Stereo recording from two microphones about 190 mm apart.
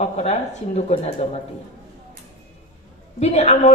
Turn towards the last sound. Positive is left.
turn(degrees=35)  # may be behind; listen again after turning